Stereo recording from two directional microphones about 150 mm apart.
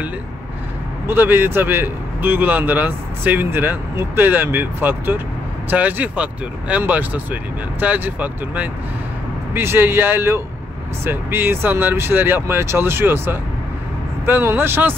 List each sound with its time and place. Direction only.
1.0 s a man's voice: 15° right (ahead or behind)